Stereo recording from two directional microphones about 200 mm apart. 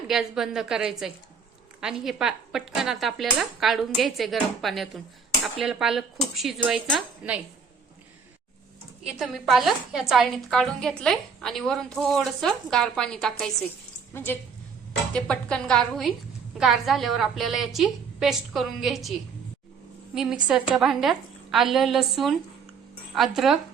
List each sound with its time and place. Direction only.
0.1 s a woman's voice: centre (ahead or behind)
9.0 s a woman's voice: centre (ahead or behind)